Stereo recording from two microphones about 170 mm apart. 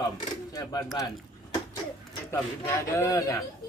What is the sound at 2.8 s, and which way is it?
Speech, 15° left (ahead or behind).